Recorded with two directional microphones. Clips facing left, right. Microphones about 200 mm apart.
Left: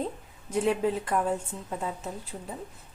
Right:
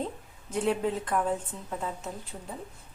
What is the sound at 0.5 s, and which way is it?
A woman's voice, 5° left (ahead or behind).